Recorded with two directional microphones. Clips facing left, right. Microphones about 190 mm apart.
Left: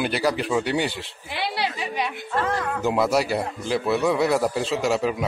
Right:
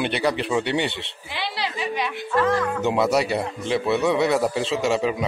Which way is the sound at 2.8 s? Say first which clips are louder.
Left 2 dB; centre (ahead or behind).